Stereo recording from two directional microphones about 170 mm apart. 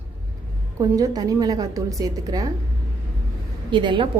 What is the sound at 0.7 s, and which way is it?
A woman's voice, 20° right (ahead or behind).